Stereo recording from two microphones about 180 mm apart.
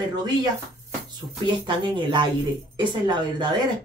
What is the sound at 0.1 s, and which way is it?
A child's voice, 25° right (ahead or behind).